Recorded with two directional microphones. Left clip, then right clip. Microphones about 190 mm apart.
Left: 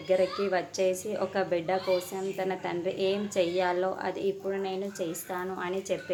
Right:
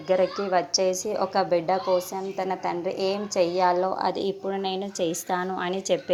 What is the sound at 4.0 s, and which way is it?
A woman's voice, 30° right (ahead or behind).